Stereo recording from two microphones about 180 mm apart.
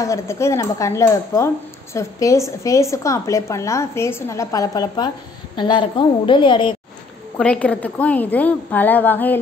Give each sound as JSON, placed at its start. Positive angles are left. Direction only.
{"t": 0.0, "sound": "a woman's voice", "side_deg": 15}
{"t": 7.3, "sound": "a woman's voice", "side_deg": 5}